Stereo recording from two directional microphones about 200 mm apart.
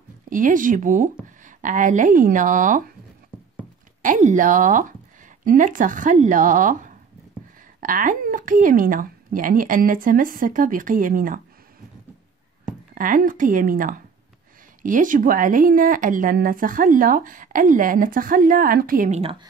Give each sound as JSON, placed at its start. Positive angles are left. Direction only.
{"t": 0.3, "sound": "speech", "side_deg": -40}
{"t": 4.0, "sound": "speech", "side_deg": -40}
{"t": 12.9, "sound": "speech", "side_deg": -45}